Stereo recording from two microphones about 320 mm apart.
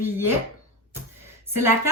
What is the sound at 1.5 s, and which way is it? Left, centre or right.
Speech, centre.